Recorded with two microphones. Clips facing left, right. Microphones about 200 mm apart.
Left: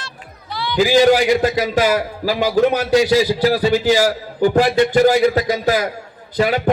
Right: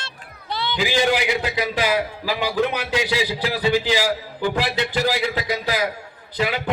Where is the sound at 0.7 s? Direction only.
40° left (ahead or behind).